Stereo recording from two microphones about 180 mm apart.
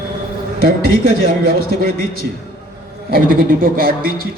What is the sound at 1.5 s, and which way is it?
Speech, 55° right (ahead or behind).